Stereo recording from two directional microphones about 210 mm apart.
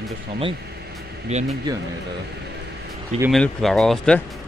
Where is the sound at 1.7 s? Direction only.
20° right (ahead or behind).